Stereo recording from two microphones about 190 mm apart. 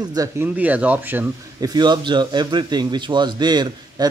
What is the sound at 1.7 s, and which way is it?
A man's voice, 25° right (ahead or behind).